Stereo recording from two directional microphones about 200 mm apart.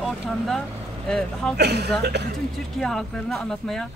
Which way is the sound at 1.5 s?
55° right (ahead or behind).